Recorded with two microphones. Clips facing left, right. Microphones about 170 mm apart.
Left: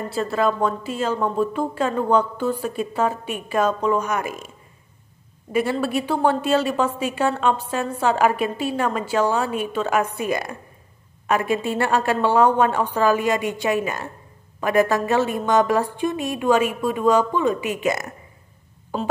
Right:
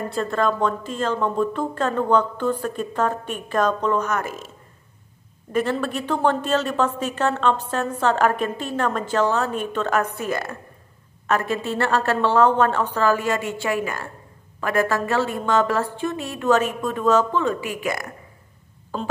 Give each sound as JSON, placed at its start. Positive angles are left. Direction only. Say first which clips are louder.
{"t": 0.1, "sound": "a woman's voice", "louder": "left 2 dB", "side_deg": 5}
{"t": 5.5, "sound": "a woman's voice", "louder": "left 1 dB", "side_deg": 10}